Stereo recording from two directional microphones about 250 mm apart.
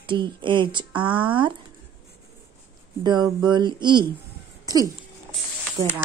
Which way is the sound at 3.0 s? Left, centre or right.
Centre.